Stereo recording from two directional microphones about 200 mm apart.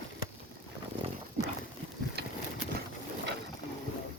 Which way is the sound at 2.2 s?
55° right (ahead or behind).